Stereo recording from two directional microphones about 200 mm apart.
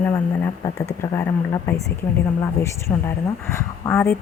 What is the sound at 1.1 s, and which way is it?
A woman's voice, 15° left (ahead or behind).